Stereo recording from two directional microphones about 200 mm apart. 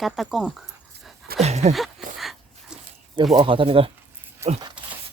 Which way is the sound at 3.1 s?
20° right (ahead or behind).